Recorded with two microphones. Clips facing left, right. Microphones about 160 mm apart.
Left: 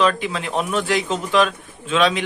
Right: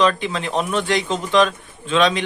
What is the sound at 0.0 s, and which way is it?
Speech, 5° left (ahead or behind).